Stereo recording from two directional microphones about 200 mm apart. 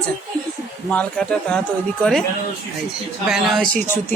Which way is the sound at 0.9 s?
5° left (ahead or behind).